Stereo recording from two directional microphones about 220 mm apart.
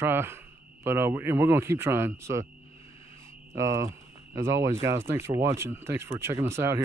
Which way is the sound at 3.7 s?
15° right (ahead or behind).